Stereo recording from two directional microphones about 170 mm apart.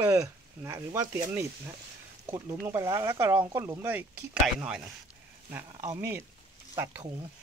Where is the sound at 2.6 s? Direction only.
20° right (ahead or behind).